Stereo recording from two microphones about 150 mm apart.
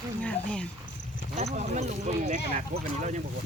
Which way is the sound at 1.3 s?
50° right (ahead or behind).